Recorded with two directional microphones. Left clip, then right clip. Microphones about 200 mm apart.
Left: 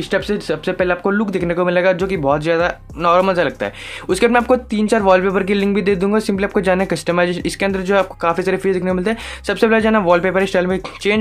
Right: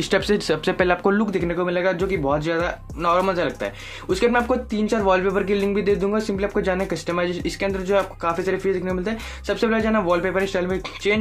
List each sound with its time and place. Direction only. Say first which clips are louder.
0.1 s speech: left 1 dB; 5° left (ahead or behind)
1.2 s speech: left 5 dB; 25° left (ahead or behind)